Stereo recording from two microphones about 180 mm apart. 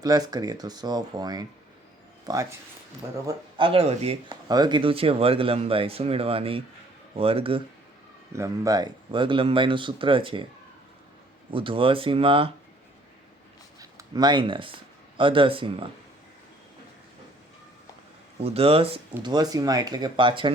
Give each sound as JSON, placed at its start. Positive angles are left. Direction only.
{"t": 0.0, "sound": "speech", "side_deg": -20}
{"t": 3.2, "sound": "speech", "side_deg": -30}
{"t": 4.3, "sound": "speech", "side_deg": -20}
{"t": 8.3, "sound": "speech", "side_deg": -15}
{"t": 11.5, "sound": "speech", "side_deg": -30}
{"t": 13.7, "sound": "speech", "side_deg": -20}
{"t": 18.3, "sound": "speech", "side_deg": -35}